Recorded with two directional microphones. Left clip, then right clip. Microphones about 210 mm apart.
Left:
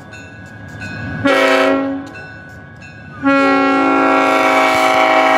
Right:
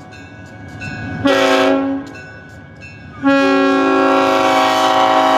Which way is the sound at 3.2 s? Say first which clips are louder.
Left 1 dB; 20° left (ahead or behind).